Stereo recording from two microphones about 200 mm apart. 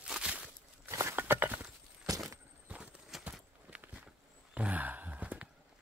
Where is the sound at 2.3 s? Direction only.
5° right (ahead or behind).